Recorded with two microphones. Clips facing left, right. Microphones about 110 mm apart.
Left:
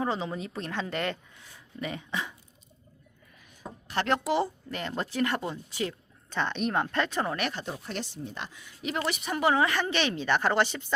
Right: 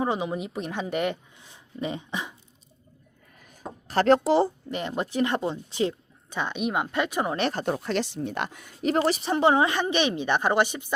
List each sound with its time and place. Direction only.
0.0 s speech: 15° right (ahead or behind)
3.4 s a sound: 40° right (ahead or behind)
4.7 s speech: 20° right (ahead or behind)
6.3 s speech: 10° right (ahead or behind)
7.5 s a woman's voice: 60° right (ahead or behind); by 10.9 s 15° right (ahead or behind)